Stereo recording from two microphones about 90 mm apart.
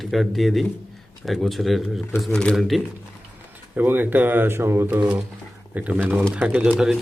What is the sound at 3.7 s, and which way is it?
Speech, 20° right (ahead or behind).